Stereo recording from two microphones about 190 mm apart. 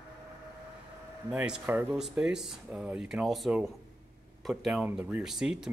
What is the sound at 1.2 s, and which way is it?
Speech, 5° right (ahead or behind).